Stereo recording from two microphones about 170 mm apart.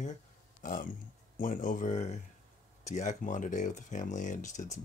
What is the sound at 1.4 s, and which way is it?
Speech, 50° left (ahead or behind).